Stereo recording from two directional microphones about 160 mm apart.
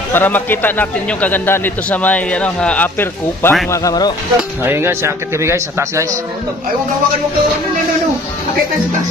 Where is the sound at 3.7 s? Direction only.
20° left (ahead or behind).